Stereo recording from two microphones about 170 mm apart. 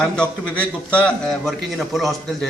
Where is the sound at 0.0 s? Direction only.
5° left (ahead or behind).